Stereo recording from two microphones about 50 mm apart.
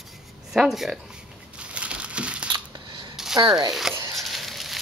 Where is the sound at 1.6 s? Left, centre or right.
Right.